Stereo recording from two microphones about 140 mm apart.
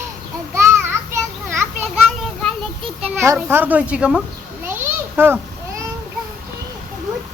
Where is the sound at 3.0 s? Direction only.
10° right (ahead or behind).